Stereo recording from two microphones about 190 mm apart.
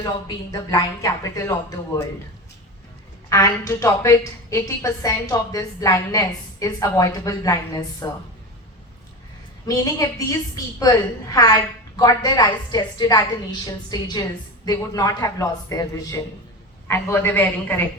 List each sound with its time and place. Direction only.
0.0 s a woman's voice: 20° left (ahead or behind)
3.2 s a woman's voice: 15° left (ahead or behind)
9.6 s a woman's voice: 20° left (ahead or behind)